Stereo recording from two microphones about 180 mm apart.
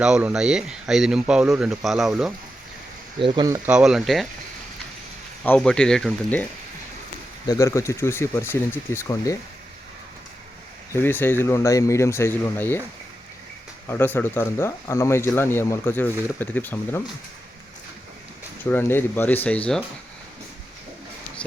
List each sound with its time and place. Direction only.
0.0 s speech: 5° right (ahead or behind)
3.2 s speech: 25° right (ahead or behind)
3.7 s speech: 5° right (ahead or behind)
5.4 s speech: 5° left (ahead or behind)
7.4 s speech: 15° left (ahead or behind)
10.9 s speech: 10° left (ahead or behind)
13.8 s speech: 10° left (ahead or behind)
18.7 s speech: 10° left (ahead or behind)